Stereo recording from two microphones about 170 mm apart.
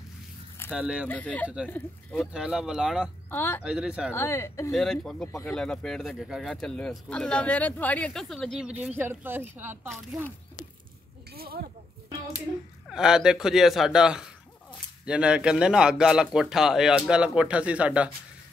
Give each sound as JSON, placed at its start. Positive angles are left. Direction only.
{"t": 0.7, "sound": "speech", "side_deg": -5}
{"t": 1.0, "sound": "speech", "side_deg": 10}
{"t": 2.1, "sound": "speech", "side_deg": -5}
{"t": 3.3, "sound": "a man's voice", "side_deg": 10}
{"t": 3.6, "sound": "speech", "side_deg": -5}
{"t": 4.1, "sound": "speech", "side_deg": 15}
{"t": 4.7, "sound": "speech", "side_deg": 0}
{"t": 11.3, "sound": "speech", "side_deg": -65}
{"t": 12.8, "sound": "speech", "side_deg": -5}